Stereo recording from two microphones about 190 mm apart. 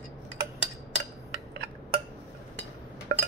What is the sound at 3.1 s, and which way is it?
Chink, 55° right (ahead or behind).